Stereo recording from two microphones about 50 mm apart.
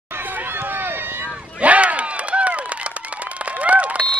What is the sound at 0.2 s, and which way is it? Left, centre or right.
Run, right.